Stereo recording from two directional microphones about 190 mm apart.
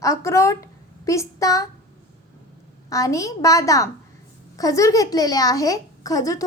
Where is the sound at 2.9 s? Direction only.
15° left (ahead or behind).